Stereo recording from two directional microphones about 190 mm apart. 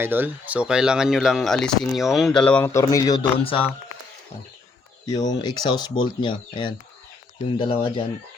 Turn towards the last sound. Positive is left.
turn(degrees=25)  # may be behind; listen again after turning